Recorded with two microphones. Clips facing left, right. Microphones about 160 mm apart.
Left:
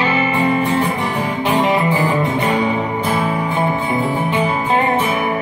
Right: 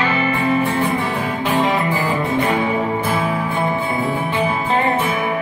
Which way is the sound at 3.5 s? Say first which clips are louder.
Left 2 dB; 15° left (ahead or behind).